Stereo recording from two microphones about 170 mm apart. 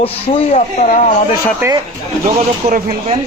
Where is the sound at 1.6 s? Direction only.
10° right (ahead or behind).